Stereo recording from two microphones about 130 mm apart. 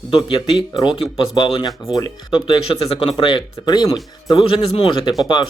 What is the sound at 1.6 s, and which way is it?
Speech, 30° left (ahead or behind).